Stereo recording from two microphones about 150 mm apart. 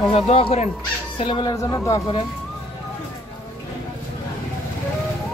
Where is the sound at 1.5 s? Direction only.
20° left (ahead or behind).